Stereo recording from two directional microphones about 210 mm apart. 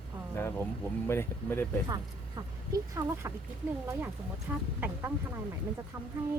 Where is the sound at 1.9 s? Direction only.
15° right (ahead or behind).